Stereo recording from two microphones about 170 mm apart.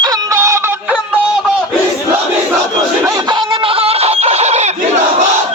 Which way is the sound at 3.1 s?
25° right (ahead or behind).